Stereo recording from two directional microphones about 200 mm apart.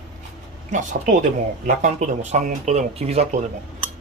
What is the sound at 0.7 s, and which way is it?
Speech, 40° right (ahead or behind).